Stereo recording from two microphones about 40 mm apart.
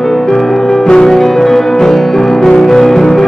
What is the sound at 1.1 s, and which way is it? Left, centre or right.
Music, centre.